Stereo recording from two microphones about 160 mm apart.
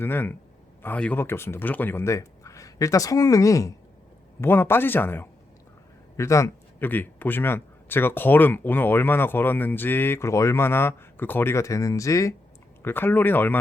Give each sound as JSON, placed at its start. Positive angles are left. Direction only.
{"t": 0.0, "sound": "a man's voice", "side_deg": 15}